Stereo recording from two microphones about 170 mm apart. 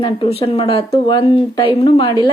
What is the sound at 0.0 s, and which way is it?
A woman's voice, 30° left (ahead or behind).